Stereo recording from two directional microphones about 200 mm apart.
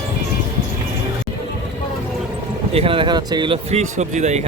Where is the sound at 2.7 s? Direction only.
30° right (ahead or behind).